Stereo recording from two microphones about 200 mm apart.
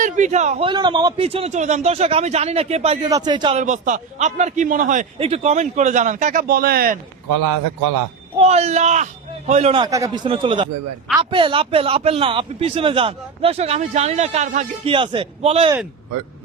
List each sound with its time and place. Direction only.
0.0 s a man's voice: 35° right (ahead or behind)
3.1 s speech: 20° right (ahead or behind)
3.6 s a man's voice: 40° right (ahead or behind)
8.4 s a man's voice: 30° right (ahead or behind)
14.9 s speech: 25° right (ahead or behind)